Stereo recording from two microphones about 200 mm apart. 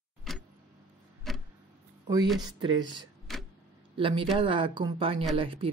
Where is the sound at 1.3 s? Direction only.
Centre (ahead or behind).